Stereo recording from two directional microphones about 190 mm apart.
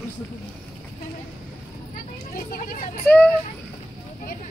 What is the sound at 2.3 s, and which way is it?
Vehicle, 50° left (ahead or behind).